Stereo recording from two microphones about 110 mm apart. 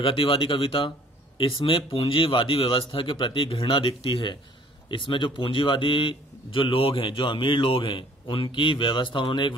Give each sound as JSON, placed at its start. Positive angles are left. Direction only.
{"t": 0.0, "sound": "speech", "side_deg": 55}